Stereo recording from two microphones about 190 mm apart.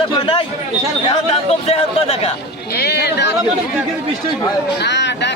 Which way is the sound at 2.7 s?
55° left (ahead or behind).